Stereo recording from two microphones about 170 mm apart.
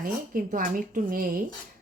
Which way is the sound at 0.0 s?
55° right (ahead or behind).